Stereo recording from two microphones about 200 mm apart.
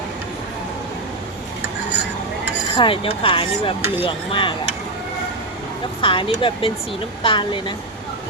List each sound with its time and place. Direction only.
2.7 s speech: 25° left (ahead or behind)
6.0 s speech: 25° left (ahead or behind)